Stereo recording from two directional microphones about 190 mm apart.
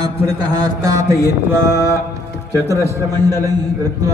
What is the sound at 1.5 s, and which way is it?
Mantra, 15° right (ahead or behind).